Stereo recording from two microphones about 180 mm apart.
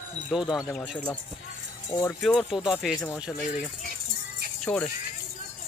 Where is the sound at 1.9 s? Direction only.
15° left (ahead or behind).